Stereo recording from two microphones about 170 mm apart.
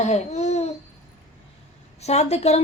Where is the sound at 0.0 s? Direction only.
40° left (ahead or behind).